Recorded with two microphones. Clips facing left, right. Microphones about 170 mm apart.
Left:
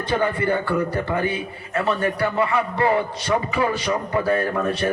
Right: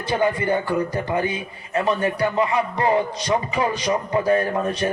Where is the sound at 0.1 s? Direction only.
15° right (ahead or behind).